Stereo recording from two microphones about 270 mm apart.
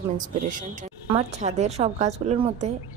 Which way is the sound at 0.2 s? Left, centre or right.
Right.